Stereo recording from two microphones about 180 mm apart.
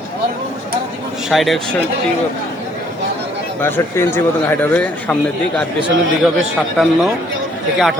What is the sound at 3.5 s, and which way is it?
A man's voice, 10° left (ahead or behind).